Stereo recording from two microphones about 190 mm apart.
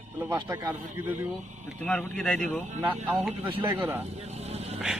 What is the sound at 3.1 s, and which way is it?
Speech, 10° right (ahead or behind).